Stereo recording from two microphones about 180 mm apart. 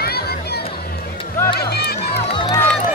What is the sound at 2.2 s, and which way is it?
Music, 30° left (ahead or behind).